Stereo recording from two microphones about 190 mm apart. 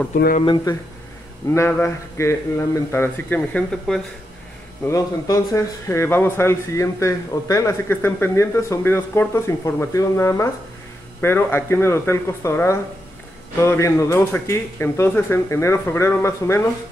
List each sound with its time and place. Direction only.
0.4 s speech: 25° left (ahead or behind)
1.5 s speech: 15° left (ahead or behind)
4.8 s speech: 15° left (ahead or behind)